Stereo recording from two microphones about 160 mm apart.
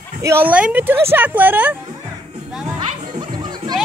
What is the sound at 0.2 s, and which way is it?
Speech, 15° right (ahead or behind).